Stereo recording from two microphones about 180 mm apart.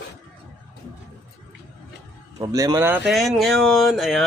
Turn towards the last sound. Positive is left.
turn(degrees=0)  # may be behind; listen again after turning